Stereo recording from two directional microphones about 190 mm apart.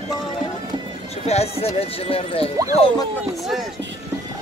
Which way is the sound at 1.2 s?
35° left (ahead or behind).